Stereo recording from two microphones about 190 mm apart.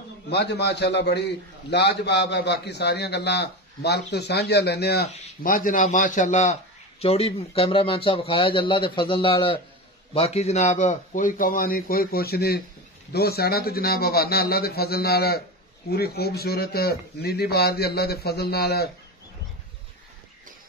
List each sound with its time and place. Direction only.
0.3 s a man's voice: 60° left (ahead or behind)